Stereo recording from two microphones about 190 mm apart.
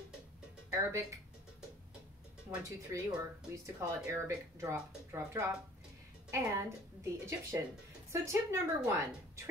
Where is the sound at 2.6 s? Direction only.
15° right (ahead or behind).